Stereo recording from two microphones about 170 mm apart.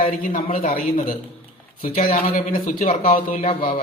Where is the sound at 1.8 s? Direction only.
45° left (ahead or behind).